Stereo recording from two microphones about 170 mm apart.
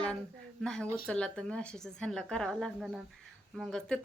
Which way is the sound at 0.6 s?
5° left (ahead or behind).